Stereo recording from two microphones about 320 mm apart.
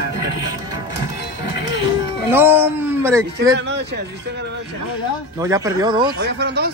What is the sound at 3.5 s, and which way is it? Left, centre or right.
Speech, right.